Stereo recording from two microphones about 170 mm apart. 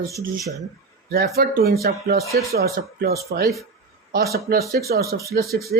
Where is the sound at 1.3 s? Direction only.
65° right (ahead or behind).